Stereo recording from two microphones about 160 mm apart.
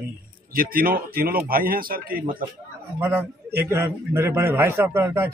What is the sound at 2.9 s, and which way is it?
A man's voice, 15° right (ahead or behind).